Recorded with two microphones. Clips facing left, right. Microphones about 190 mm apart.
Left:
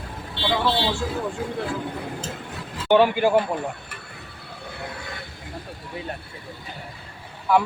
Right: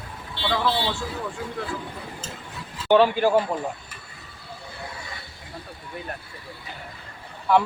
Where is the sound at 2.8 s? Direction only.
15° left (ahead or behind).